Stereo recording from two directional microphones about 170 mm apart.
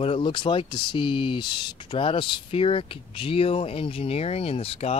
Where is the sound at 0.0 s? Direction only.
30° left (ahead or behind).